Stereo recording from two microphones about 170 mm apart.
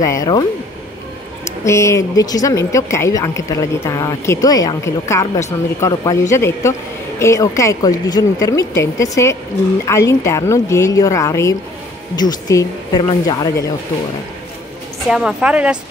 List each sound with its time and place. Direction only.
0.0 s a woman's voice: 20° left (ahead or behind)
1.6 s a woman's voice: 15° left (ahead or behind)
15.0 s a woman's voice: 5° right (ahead or behind)